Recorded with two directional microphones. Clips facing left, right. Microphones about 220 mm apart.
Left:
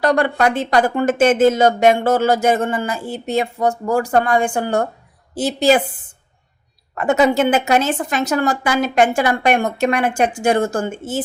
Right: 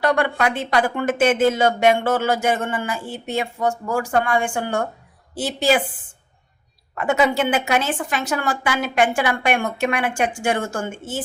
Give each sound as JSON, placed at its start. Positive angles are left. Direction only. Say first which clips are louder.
{"t": 0.0, "sound": "speech", "louder": "left 4 dB", "side_deg": 40}
{"t": 6.9, "sound": "speech", "louder": "left 4 dB", "side_deg": 40}